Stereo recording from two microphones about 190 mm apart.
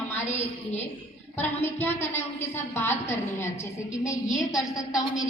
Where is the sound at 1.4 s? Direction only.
10° left (ahead or behind).